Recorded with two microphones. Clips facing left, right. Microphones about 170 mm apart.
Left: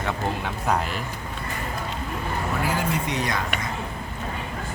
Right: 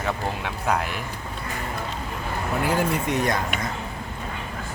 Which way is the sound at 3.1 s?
50° right (ahead or behind).